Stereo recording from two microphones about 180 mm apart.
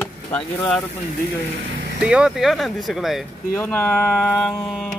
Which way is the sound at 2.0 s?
5° right (ahead or behind).